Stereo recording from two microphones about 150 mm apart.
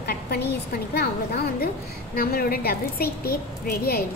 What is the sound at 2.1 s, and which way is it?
A woman's voice, 75° left (ahead or behind).